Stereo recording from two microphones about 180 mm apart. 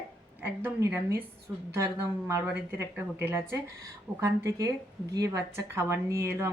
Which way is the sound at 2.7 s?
15° right (ahead or behind).